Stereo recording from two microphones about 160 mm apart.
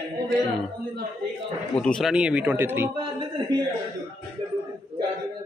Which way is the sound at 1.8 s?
Centre (ahead or behind).